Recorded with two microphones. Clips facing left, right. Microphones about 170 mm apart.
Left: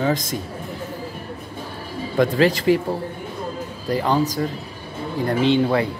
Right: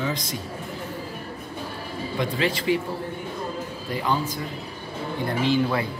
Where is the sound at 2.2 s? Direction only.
45° left (ahead or behind).